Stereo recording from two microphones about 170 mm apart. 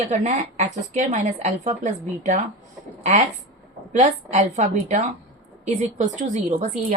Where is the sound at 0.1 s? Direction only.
45° right (ahead or behind).